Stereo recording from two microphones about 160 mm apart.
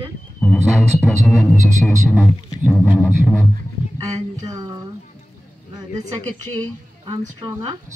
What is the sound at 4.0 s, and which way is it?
Speech, 20° right (ahead or behind).